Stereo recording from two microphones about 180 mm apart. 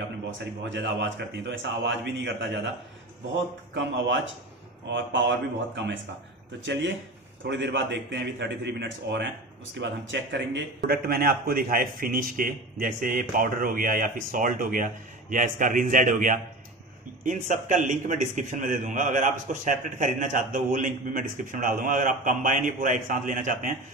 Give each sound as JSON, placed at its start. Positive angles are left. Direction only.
{"t": 0.7, "sound": "a man's voice", "side_deg": -90}
{"t": 6.6, "sound": "a man's voice", "side_deg": -90}
{"t": 9.8, "sound": "a man's voice", "side_deg": -90}
{"t": 10.9, "sound": "a man's voice", "side_deg": -60}